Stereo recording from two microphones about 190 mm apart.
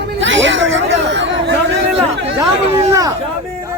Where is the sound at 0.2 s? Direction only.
75° right (ahead or behind).